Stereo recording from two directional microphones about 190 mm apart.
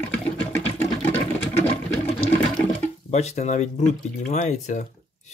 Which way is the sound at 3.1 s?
35° left (ahead or behind).